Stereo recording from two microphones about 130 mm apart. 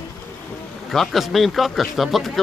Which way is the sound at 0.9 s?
Centre (ahead or behind).